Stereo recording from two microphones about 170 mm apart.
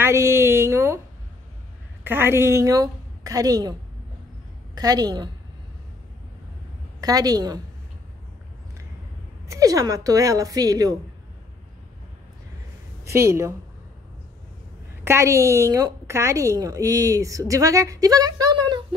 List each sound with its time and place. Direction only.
0.3 s speech: 15° right (ahead or behind)
2.0 s a woman's voice: 15° right (ahead or behind)
4.7 s a woman's voice: 20° right (ahead or behind)
7.0 s a woman's voice: 20° right (ahead or behind)
9.5 s a woman's voice: 20° right (ahead or behind)
13.0 s speech: 15° right (ahead or behind)
15.0 s a woman's voice: 15° right (ahead or behind)